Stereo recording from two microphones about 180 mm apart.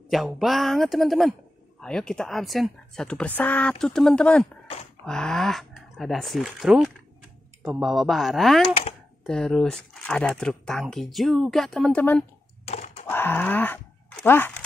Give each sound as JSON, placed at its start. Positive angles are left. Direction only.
{"t": 0.1, "sound": "speech", "side_deg": 0}
{"t": 12.6, "sound": "computer keyboard", "side_deg": 35}
{"t": 13.1, "sound": "a sound", "side_deg": 10}